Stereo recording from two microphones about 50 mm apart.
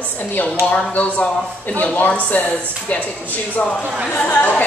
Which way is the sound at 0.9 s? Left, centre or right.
Left.